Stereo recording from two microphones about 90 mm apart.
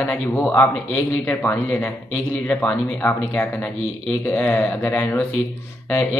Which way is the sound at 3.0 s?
20° left (ahead or behind).